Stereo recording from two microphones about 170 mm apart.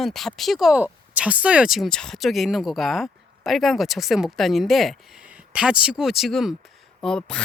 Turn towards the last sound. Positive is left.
turn(degrees=5)  # may be behind; listen again after turning